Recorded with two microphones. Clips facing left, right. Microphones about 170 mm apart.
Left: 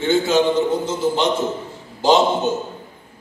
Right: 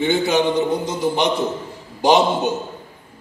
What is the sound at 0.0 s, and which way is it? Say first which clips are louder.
A man's voice: left 1 dB; 15° right (ahead or behind).